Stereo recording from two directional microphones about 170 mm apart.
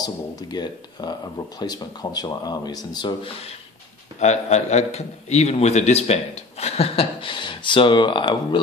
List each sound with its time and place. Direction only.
0.0 s a man's voice: 25° left (ahead or behind)